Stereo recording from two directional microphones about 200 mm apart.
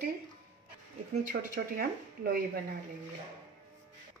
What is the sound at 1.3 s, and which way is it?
Speech, 45° right (ahead or behind).